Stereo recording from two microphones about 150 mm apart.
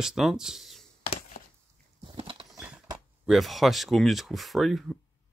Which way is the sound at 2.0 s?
35° right (ahead or behind).